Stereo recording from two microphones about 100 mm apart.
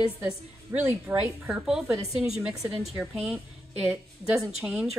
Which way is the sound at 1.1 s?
20° right (ahead or behind).